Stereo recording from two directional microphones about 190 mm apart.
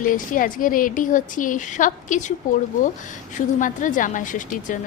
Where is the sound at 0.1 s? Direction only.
45° left (ahead or behind).